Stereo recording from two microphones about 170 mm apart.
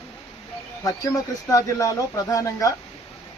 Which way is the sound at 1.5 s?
20° left (ahead or behind).